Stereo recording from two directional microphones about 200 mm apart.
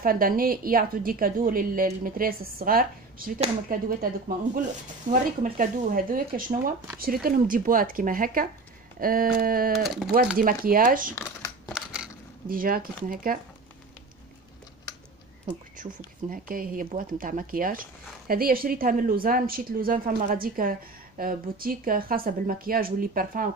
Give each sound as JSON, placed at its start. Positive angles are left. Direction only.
{"t": 0.0, "sound": "a woman's voice", "side_deg": -45}
{"t": 11.1, "sound": "computer keyboard", "side_deg": 15}
{"t": 11.7, "sound": "crushing", "side_deg": -5}
{"t": 12.4, "sound": "a woman's voice", "side_deg": -45}
{"t": 15.8, "sound": "a woman's voice", "side_deg": -45}